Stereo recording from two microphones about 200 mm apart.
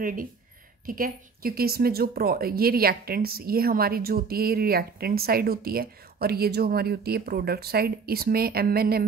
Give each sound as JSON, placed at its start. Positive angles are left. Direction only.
{"t": 0.0, "sound": "a woman's voice", "side_deg": -45}